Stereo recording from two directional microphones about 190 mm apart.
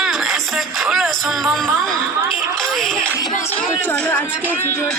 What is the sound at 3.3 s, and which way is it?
Speech, 35° left (ahead or behind).